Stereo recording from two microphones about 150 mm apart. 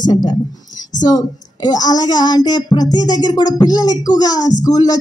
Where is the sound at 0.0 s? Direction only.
30° left (ahead or behind).